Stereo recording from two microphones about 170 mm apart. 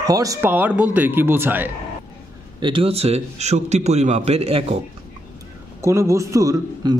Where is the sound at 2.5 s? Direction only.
30° right (ahead or behind).